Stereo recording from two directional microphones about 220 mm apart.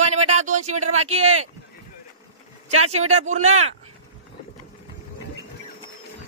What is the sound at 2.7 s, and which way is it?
Speech, 30° right (ahead or behind).